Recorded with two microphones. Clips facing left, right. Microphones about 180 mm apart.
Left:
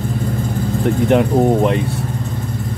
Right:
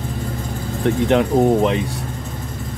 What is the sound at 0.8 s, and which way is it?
Speech, centre (ahead or behind).